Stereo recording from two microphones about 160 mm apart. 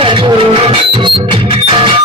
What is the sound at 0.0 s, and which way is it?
Music, 30° right (ahead or behind).